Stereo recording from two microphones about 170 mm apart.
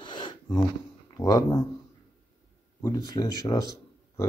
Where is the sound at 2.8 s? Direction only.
20° left (ahead or behind).